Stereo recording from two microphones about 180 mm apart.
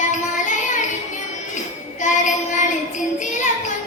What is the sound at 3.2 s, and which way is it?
Child singing, 45° left (ahead or behind).